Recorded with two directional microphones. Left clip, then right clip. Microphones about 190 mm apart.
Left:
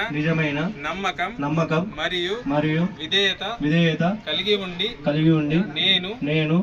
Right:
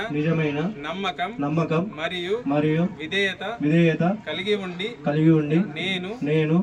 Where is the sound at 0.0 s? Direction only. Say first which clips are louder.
Left 1 dB; 60° right (ahead or behind); by 2.3 s 45° right (ahead or behind).